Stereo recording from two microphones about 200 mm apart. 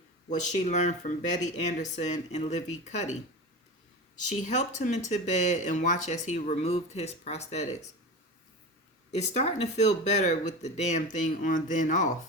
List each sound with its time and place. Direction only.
0.3 s speech: 35° left (ahead or behind)
4.4 s speech: 35° left (ahead or behind)
9.1 s speech: 35° left (ahead or behind)